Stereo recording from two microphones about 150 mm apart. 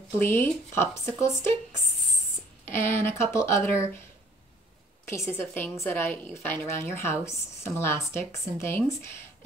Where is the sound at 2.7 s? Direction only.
15° left (ahead or behind).